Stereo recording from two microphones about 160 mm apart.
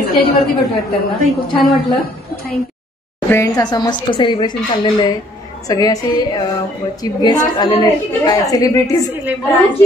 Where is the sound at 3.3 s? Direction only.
20° left (ahead or behind).